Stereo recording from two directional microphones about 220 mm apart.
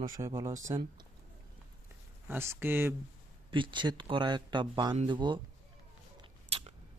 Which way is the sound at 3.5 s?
20° right (ahead or behind).